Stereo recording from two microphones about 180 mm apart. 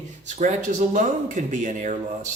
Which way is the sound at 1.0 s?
45° right (ahead or behind).